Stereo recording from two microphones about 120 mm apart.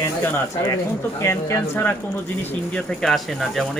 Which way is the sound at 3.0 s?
Centre (ahead or behind).